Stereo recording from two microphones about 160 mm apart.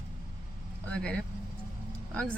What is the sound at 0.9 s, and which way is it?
Speech, 5° left (ahead or behind).